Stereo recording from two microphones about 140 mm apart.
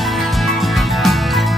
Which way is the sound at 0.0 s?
Centre (ahead or behind).